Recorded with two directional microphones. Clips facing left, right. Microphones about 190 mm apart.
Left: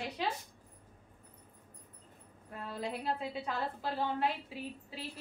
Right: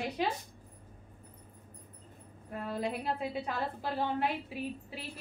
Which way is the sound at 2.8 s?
15° right (ahead or behind).